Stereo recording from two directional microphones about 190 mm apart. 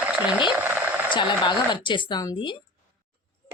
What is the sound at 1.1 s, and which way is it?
A woman's voice, 25° left (ahead or behind).